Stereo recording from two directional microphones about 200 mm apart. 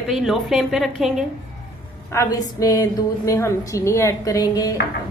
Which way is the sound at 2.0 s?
15° left (ahead or behind).